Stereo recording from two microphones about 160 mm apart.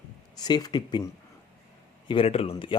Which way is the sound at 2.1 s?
35° left (ahead or behind).